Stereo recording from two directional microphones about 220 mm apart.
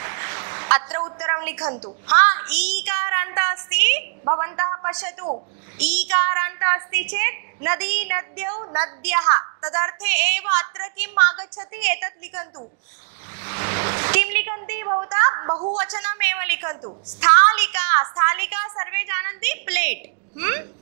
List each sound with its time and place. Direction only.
0.0 s a sound: 15° right (ahead or behind)
0.8 s a woman's voice: 25° right (ahead or behind)
1.2 s a woman's voice: 15° right (ahead or behind)
1.6 s a woman's voice: 30° right (ahead or behind)
2.0 s a woman's voice: 15° right (ahead or behind)
13.4 s a sound: 15° right (ahead or behind)
15.8 s a woman's voice: 15° right (ahead or behind)